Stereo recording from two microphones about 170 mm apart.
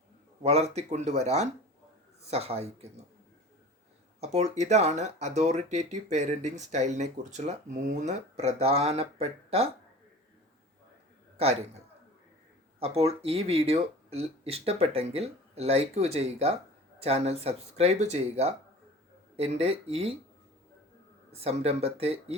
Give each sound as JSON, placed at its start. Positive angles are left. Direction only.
{"t": 0.4, "sound": "speech", "side_deg": -40}
{"t": 4.2, "sound": "speech", "side_deg": -40}
{"t": 12.8, "sound": "speech", "side_deg": -40}
{"t": 21.4, "sound": "speech", "side_deg": -40}